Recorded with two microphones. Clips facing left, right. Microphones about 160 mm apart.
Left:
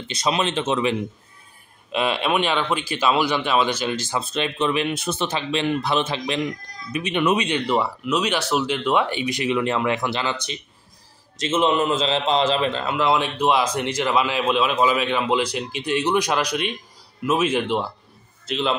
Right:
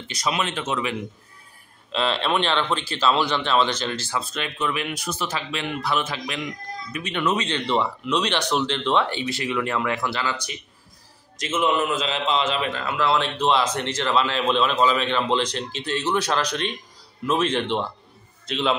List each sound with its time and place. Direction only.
0.1 s speech: 25° left (ahead or behind)
1.9 s a man's voice: 15° left (ahead or behind)
11.3 s a man's voice: 25° left (ahead or behind); by 18.8 s centre (ahead or behind)